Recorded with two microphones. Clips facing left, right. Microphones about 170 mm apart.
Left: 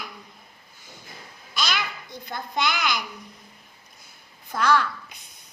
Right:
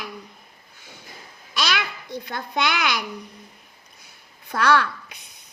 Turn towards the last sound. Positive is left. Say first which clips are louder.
# right 2 dB
turn(degrees=-70)  # may be behind; listen again after turning